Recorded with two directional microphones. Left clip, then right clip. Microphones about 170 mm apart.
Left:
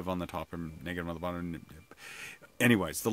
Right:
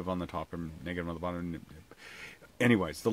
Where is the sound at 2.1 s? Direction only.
30° left (ahead or behind).